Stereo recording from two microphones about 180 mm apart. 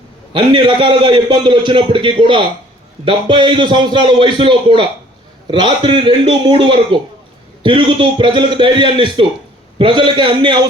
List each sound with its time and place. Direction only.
0.3 s a man's voice: 30° right (ahead or behind)